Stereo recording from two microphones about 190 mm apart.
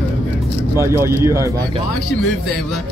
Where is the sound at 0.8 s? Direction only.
15° right (ahead or behind).